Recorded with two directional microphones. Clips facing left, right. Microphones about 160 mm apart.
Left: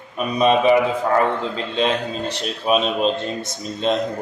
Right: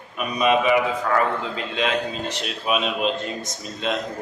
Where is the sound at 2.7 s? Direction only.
35° left (ahead or behind).